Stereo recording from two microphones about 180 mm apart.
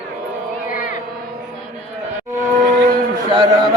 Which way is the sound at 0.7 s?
50° left (ahead or behind).